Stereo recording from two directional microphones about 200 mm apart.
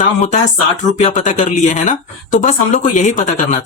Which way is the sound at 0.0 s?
35° left (ahead or behind).